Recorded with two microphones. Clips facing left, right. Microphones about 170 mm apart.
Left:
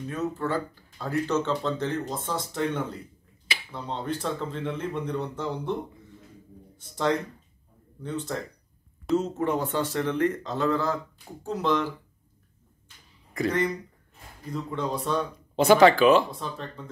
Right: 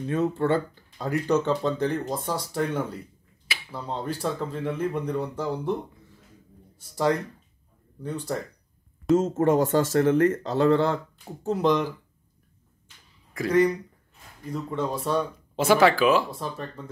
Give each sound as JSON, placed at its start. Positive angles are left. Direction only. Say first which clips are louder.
{"t": 0.1, "sound": "speech", "louder": "right 6 dB", "side_deg": -25}
{"t": 0.9, "sound": "speech", "louder": "right 2 dB", "side_deg": -15}
{"t": 9.1, "sound": "speech", "louder": "right 5 dB", "side_deg": -45}
{"t": 11.4, "sound": "speech", "louder": "right 3 dB", "side_deg": -20}
{"t": 13.3, "sound": "speech", "louder": "right 5 dB", "side_deg": -5}